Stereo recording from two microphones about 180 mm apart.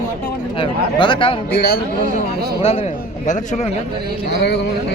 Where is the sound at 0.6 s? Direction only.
25° left (ahead or behind).